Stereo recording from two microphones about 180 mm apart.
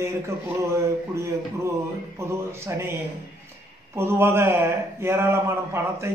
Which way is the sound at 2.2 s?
15° right (ahead or behind).